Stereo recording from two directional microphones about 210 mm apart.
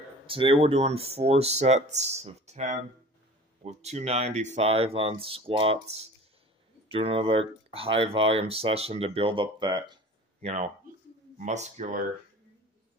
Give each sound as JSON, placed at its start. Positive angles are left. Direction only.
{"t": 0.3, "sound": "speech", "side_deg": -25}
{"t": 10.4, "sound": "speech", "side_deg": -35}